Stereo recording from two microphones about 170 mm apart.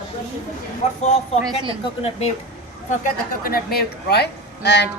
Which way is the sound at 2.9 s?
55° left (ahead or behind).